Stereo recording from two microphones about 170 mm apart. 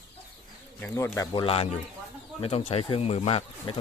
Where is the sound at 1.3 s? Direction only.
30° left (ahead or behind).